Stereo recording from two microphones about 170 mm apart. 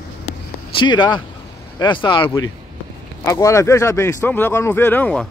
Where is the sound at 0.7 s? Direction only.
25° left (ahead or behind).